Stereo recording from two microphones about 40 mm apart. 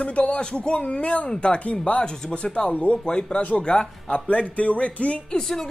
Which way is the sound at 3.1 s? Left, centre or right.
Left.